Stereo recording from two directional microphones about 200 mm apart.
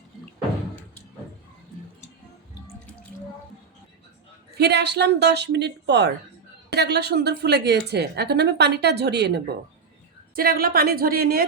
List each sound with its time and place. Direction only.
4.5 s a woman's voice: 55° right (ahead or behind)